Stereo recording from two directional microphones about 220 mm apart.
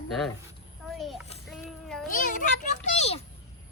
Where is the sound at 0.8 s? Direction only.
Centre (ahead or behind).